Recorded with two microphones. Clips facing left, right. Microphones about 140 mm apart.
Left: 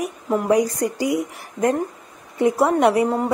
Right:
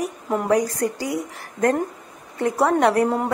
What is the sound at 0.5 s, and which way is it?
A woman's voice, 15° left (ahead or behind).